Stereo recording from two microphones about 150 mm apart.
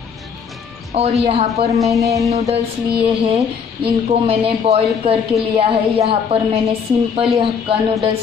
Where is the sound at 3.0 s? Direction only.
40° right (ahead or behind).